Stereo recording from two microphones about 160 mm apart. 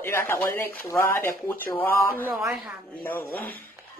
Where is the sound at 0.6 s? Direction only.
15° left (ahead or behind).